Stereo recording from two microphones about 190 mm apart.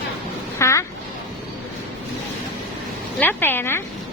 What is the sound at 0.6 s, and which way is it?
Speech, 15° left (ahead or behind).